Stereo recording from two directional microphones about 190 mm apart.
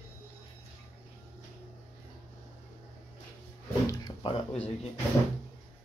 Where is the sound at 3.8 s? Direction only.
20° left (ahead or behind).